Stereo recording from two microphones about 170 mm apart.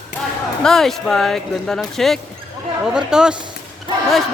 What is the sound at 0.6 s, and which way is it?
Speech, centre (ahead or behind).